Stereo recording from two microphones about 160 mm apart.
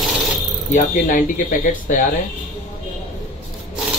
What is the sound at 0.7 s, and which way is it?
Speech, 55° left (ahead or behind).